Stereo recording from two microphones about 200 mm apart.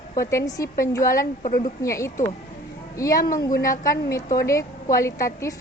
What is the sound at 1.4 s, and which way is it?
Speech, 40° left (ahead or behind).